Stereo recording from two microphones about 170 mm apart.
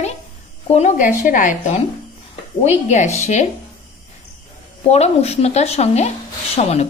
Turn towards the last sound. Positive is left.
turn(degrees=40)  # may be behind; listen again after turning